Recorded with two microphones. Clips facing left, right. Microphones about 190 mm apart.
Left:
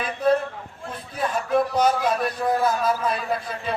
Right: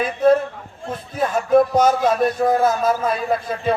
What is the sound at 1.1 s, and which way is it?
Music, 45° right (ahead or behind).